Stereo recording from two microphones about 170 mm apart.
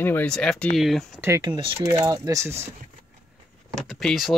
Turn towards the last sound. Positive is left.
turn(degrees=0)  # may be behind; listen again after turning